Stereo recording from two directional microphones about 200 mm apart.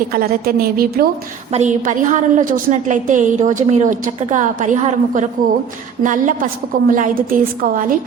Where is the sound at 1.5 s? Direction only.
35° right (ahead or behind).